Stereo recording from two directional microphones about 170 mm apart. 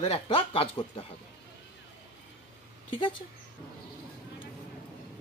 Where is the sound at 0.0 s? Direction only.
35° left (ahead or behind).